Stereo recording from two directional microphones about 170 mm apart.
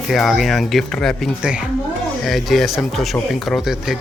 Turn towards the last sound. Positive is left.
turn(degrees=-5)  # may be behind; listen again after turning